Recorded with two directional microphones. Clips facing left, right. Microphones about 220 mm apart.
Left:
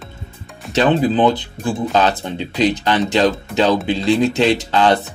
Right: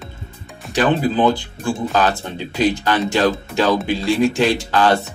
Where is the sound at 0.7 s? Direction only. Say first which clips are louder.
Left 2 dB; 20° left (ahead or behind).